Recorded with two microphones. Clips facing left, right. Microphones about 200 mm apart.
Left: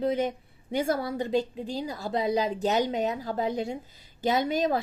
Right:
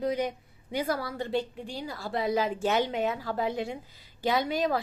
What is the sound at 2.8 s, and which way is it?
Speech, 40° left (ahead or behind).